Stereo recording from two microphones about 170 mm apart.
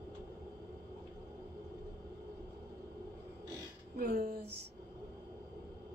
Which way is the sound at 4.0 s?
60° right (ahead or behind).